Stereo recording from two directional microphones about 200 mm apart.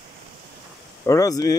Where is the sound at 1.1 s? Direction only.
15° left (ahead or behind).